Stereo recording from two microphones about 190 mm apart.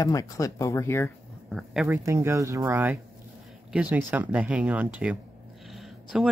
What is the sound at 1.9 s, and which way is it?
Speech, 15° right (ahead or behind).